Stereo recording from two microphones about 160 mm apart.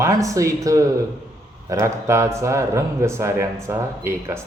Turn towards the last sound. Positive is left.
turn(degrees=-15)  # may be behind; listen again after turning